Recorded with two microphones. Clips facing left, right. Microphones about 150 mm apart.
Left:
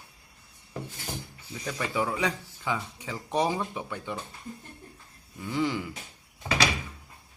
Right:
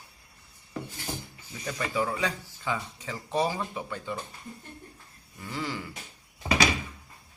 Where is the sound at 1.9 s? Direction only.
15° left (ahead or behind).